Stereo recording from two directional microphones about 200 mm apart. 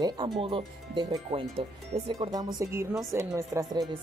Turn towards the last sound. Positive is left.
turn(degrees=-15)  # may be behind; listen again after turning